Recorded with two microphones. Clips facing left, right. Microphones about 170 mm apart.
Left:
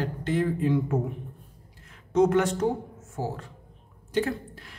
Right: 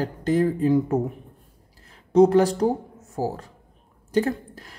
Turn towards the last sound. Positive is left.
turn(degrees=-40)  # may be behind; listen again after turning